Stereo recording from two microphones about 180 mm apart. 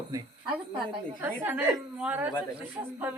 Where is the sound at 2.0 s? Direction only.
10° right (ahead or behind).